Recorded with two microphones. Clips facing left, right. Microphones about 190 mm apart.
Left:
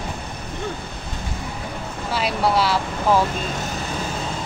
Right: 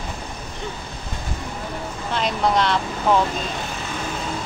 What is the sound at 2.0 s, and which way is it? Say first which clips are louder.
Speech: even; 5° left (ahead or behind).